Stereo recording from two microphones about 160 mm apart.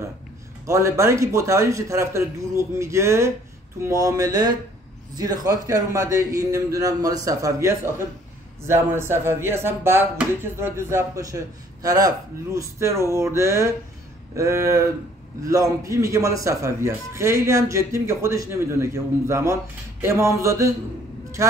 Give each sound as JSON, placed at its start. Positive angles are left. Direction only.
{"t": 0.7, "sound": "a man's voice", "side_deg": -20}